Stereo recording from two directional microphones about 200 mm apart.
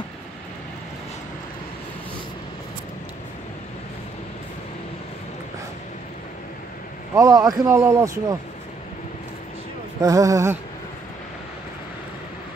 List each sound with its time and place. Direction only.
7.2 s a man's voice: 15° right (ahead or behind)
10.0 s a man's voice: 15° right (ahead or behind)